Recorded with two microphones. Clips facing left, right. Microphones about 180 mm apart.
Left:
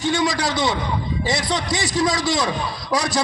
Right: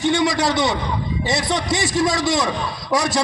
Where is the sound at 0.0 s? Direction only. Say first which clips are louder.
Right 3 dB; 25° right (ahead or behind).